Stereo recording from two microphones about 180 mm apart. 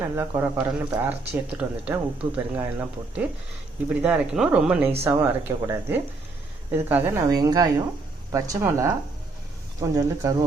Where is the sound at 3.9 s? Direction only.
10° right (ahead or behind).